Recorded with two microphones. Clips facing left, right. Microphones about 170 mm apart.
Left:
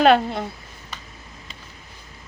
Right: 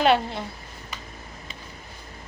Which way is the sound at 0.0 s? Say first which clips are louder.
Left 5 dB; 55° left (ahead or behind).